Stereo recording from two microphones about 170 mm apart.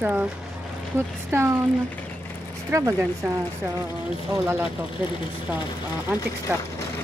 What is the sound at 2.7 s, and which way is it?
Speech, 20° right (ahead or behind).